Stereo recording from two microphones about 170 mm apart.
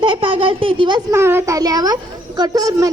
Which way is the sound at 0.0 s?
30° right (ahead or behind).